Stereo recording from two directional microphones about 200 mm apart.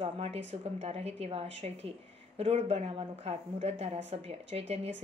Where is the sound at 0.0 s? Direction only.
30° right (ahead or behind).